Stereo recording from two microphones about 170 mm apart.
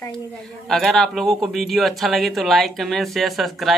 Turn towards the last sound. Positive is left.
turn(degrees=0)  # may be behind; listen again after turning